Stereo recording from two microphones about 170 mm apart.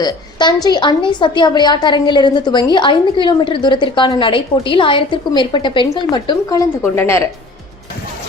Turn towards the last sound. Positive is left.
turn(degrees=15)  # may be behind; listen again after turning